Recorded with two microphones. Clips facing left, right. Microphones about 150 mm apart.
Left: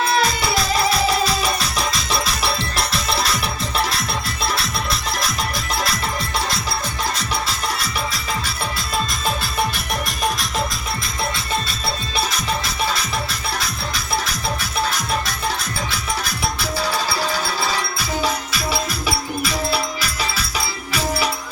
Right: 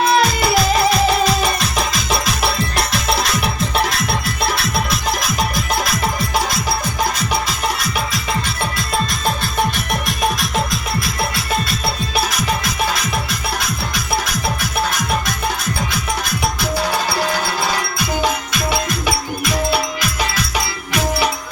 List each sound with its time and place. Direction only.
0.2 s music: centre (ahead or behind)
9.2 s music: centre (ahead or behind)
17.1 s music: 60° right (ahead or behind)
17.4 s music: centre (ahead or behind)